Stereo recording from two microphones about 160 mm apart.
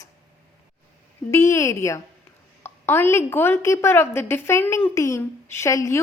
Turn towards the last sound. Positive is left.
turn(degrees=20)  # may be behind; listen again after turning